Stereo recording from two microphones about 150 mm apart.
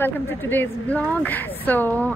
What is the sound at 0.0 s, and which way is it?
A woman's voice, 15° left (ahead or behind).